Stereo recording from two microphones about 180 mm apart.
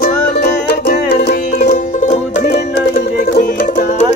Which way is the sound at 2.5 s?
60° left (ahead or behind).